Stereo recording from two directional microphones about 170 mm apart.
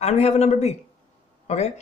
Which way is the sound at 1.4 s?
40° left (ahead or behind).